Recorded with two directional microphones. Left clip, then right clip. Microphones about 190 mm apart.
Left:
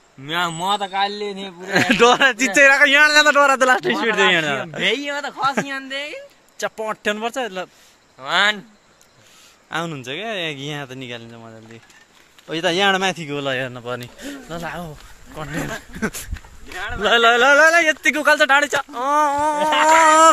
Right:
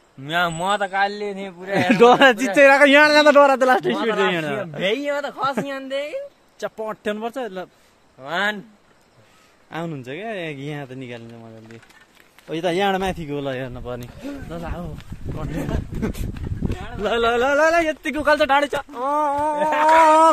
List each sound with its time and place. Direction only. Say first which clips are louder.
0.2 s a man's voice: right 1 dB; 70° right (ahead or behind)
0.7 s speech: even; 5° right (ahead or behind)
4.7 s speech: right 2 dB; 65° right (ahead or behind)
6.6 s speech: left 4 dB; 5° right (ahead or behind)
8.2 s speech: left 5 dB; 30° right (ahead or behind)
9.7 s speech: left 4 dB; 5° right (ahead or behind)
12.4 s speech: left 3 dB; 10° right (ahead or behind)